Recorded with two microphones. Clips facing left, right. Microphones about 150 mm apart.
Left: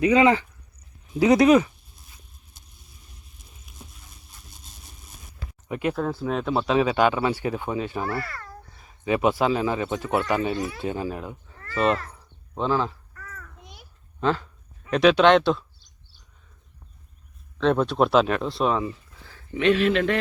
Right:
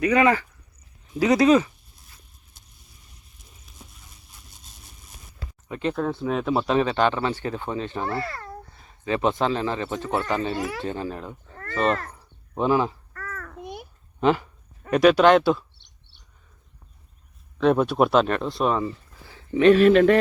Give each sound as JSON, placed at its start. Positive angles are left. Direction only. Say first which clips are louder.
{"t": 0.0, "sound": "speech", "louder": "left 1 dB", "side_deg": 20}
{"t": 5.6, "sound": "speech", "louder": "left 1 dB", "side_deg": 15}
{"t": 5.9, "sound": "speech", "louder": "right 2 dB", "side_deg": 5}
{"t": 8.0, "sound": "a child's voice", "louder": "right 1 dB", "side_deg": -25}
{"t": 9.0, "sound": "speech", "louder": "left 1 dB", "side_deg": 10}
{"t": 10.6, "sound": "speech", "louder": "right 1 dB", "side_deg": -80}
{"t": 10.8, "sound": "speech", "louder": "left 1 dB", "side_deg": 10}
{"t": 12.1, "sound": "a sound", "louder": "right 3 dB", "side_deg": -15}
{"t": 13.1, "sound": "a sound", "louder": "right 8 dB", "side_deg": -75}
{"t": 14.2, "sound": "speech", "louder": "right 3 dB", "side_deg": -15}
{"t": 14.8, "sound": "speech", "louder": "right 1 dB", "side_deg": 0}
{"t": 15.8, "sound": "a sound", "louder": "left 1 dB", "side_deg": -70}
{"t": 17.6, "sound": "speech", "louder": "right 2 dB", "side_deg": -10}
{"t": 19.5, "sound": "speech", "louder": "right 6 dB", "side_deg": -40}